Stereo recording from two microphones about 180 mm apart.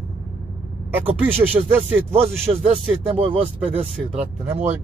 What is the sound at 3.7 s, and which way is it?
Speech, 10° right (ahead or behind).